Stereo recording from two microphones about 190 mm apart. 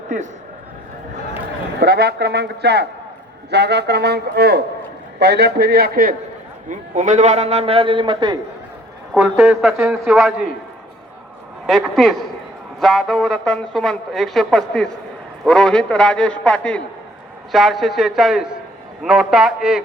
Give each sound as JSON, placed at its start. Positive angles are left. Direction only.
{"t": 1.8, "sound": "speech", "side_deg": -55}
{"t": 6.7, "sound": "a man's voice", "side_deg": -40}
{"t": 9.1, "sound": "a woman's voice", "side_deg": -5}
{"t": 11.6, "sound": "a woman's voice", "side_deg": 0}